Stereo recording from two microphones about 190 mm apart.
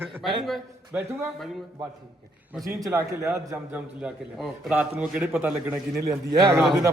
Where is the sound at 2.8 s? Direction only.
15° right (ahead or behind).